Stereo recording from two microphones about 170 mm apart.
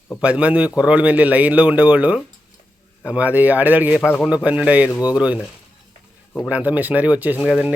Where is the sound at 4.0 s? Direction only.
10° left (ahead or behind).